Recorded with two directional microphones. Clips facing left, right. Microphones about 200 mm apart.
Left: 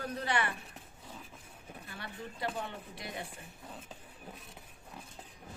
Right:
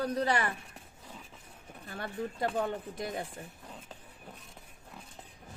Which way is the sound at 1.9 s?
45° right (ahead or behind).